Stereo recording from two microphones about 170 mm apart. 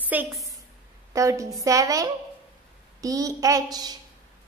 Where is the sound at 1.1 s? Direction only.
20° right (ahead or behind).